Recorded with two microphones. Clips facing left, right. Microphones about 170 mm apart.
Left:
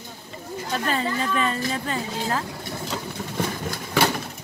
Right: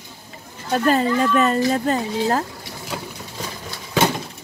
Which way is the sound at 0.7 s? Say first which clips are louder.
Right 8 dB; 45° right (ahead or behind).